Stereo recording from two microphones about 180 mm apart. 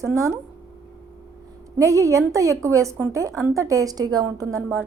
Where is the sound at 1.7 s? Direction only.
15° right (ahead or behind).